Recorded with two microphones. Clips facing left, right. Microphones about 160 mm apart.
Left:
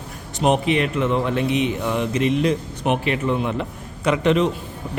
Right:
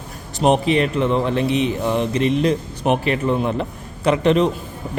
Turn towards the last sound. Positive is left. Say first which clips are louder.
# right 2 dB
turn(degrees=-35)  # may be behind; listen again after turning